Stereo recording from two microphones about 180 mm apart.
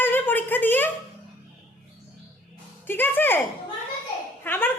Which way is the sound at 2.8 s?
10° left (ahead or behind).